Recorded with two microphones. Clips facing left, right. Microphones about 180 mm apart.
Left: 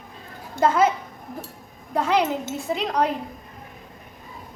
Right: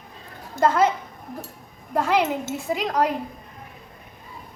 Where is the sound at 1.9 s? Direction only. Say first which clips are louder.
Even; centre (ahead or behind).